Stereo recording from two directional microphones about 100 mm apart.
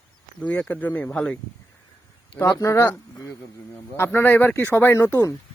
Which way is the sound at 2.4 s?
30° left (ahead or behind).